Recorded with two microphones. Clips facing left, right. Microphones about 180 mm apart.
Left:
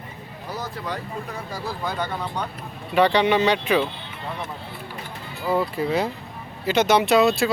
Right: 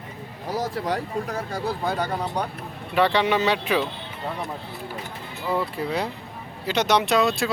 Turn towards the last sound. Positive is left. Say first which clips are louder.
# left 4 dB
turn(degrees=0)  # may be behind; listen again after turning